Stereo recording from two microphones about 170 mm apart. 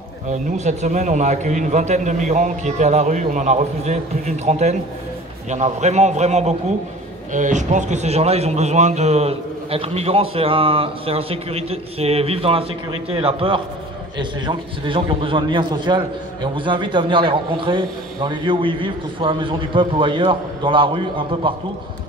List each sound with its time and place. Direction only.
0.3 s a man's voice: 45° right (ahead or behind)